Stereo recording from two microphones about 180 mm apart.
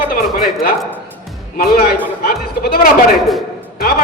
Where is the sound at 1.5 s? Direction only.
55° left (ahead or behind).